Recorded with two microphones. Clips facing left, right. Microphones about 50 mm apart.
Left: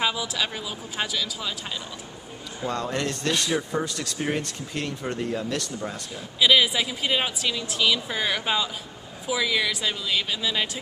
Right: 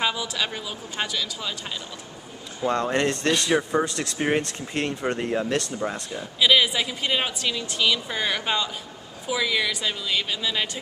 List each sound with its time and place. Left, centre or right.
0.0 s speech: centre
2.7 s speech: right
3.4 s speech: right
3.8 s speech: right
6.1 s speech: centre